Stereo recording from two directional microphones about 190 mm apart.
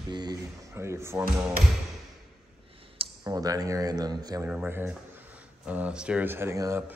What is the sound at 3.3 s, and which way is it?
Speech, 20° right (ahead or behind).